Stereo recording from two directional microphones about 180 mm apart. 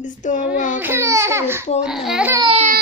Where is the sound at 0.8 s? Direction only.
15° right (ahead or behind).